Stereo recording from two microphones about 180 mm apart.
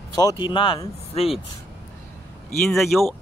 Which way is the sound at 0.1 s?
20° left (ahead or behind).